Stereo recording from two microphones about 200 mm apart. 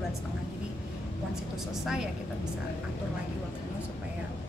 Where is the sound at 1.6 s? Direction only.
Centre (ahead or behind).